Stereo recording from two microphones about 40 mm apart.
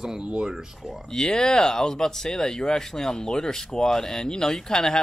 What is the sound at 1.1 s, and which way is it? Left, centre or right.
Speech, centre.